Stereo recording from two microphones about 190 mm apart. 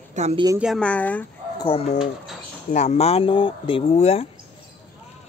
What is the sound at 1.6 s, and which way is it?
Speech, 30° left (ahead or behind).